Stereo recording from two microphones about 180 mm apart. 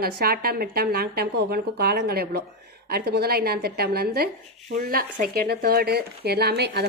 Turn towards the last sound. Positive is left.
turn(degrees=-65)  # may be behind; listen again after turning